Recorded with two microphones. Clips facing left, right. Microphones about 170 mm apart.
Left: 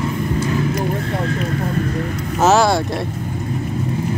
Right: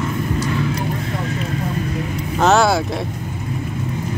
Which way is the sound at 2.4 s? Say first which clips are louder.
Left 1 dB; centre (ahead or behind).